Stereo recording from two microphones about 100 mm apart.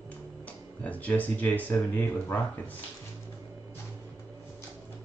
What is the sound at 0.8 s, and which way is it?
Speech, 15° left (ahead or behind).